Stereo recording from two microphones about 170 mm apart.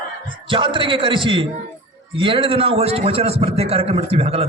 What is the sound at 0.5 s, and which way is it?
A man's voice, 30° right (ahead or behind).